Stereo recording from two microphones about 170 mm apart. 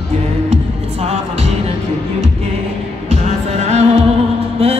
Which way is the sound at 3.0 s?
40° right (ahead or behind).